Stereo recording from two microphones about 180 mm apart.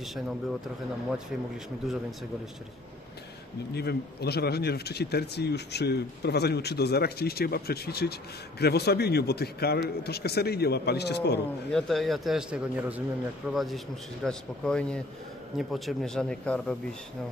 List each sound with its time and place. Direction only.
3.7 s speech: 65° left (ahead or behind)
11.7 s speech: centre (ahead or behind)